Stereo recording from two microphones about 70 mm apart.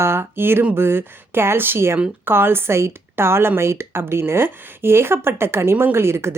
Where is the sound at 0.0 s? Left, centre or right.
Right.